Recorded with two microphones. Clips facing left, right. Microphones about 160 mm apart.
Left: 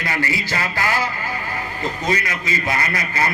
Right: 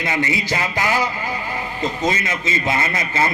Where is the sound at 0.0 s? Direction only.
20° right (ahead or behind).